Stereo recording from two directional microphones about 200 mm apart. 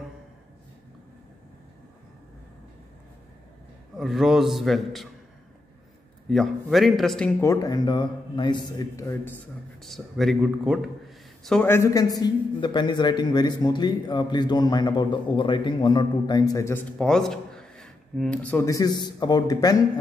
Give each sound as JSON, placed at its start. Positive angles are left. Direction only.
{"t": 3.9, "sound": "a man's voice", "side_deg": 0}
{"t": 6.2, "sound": "a man's voice", "side_deg": 0}
{"t": 9.8, "sound": "a man's voice", "side_deg": 0}